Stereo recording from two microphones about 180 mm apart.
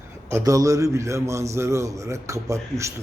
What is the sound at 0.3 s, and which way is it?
A man's voice, 15° right (ahead or behind).